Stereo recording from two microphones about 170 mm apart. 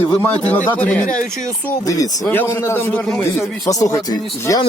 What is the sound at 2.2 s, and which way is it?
A man's voice, 10° left (ahead or behind).